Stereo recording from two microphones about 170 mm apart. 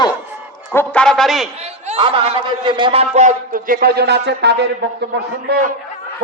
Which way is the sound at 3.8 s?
75° right (ahead or behind).